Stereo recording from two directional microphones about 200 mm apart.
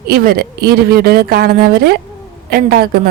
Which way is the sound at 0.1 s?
50° right (ahead or behind).